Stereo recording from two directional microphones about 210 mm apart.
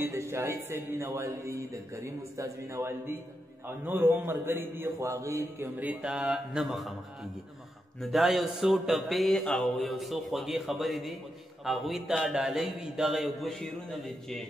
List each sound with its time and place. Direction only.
0.0 s a man's voice: 15° right (ahead or behind)
8.0 s a man's voice: centre (ahead or behind)